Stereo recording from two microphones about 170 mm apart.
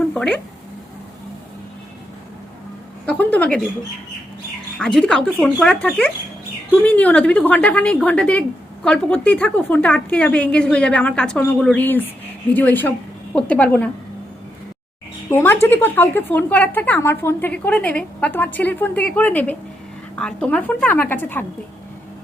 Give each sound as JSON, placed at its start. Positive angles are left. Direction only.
{"t": 0.1, "sound": "speech", "side_deg": 5}
{"t": 3.1, "sound": "a woman's voice", "side_deg": 10}
{"t": 4.8, "sound": "a woman's voice", "side_deg": 5}
{"t": 15.3, "sound": "a woman's voice", "side_deg": 15}